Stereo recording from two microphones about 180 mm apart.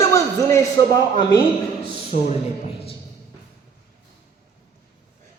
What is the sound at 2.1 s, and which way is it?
Speech, 45° left (ahead or behind).